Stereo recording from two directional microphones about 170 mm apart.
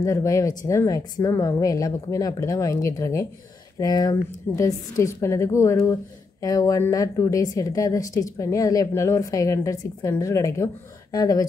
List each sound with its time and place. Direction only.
0.0 s a woman's voice: 20° left (ahead or behind)